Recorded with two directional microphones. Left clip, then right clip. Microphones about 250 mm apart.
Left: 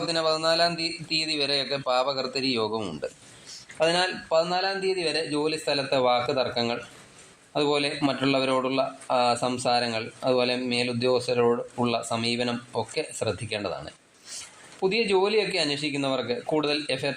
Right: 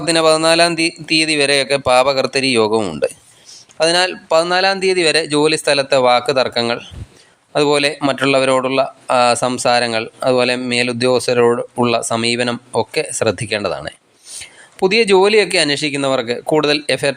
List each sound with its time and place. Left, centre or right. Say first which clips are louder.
0.1 s speech: right 13 dB; right